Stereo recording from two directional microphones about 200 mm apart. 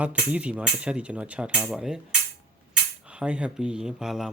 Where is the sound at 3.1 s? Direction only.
5° right (ahead or behind).